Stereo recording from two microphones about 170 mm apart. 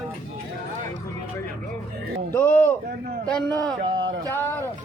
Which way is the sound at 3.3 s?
5° left (ahead or behind).